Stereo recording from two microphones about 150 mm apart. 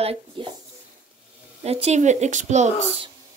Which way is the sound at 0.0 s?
40° right (ahead or behind).